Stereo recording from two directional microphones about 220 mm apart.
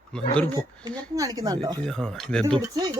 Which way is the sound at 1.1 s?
15° right (ahead or behind).